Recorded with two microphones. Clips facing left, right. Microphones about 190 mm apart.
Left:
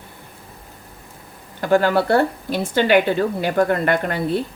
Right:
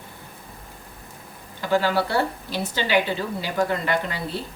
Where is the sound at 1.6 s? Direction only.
50° left (ahead or behind).